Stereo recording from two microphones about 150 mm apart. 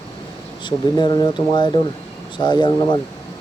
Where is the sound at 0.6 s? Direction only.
30° left (ahead or behind).